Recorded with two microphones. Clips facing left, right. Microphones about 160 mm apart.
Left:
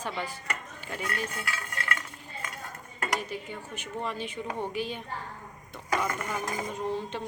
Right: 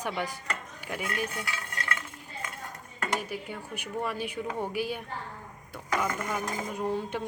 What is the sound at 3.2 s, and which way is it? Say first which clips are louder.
Speech: even; 10° right (ahead or behind).